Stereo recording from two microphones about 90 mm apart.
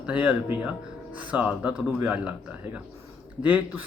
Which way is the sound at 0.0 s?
15° right (ahead or behind).